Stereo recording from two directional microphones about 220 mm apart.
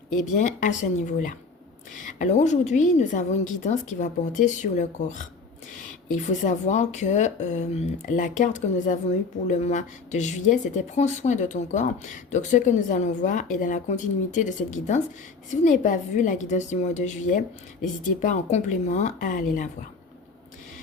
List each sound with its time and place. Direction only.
0.3 s speech: 35° left (ahead or behind)
6.2 s speech: 35° left (ahead or behind)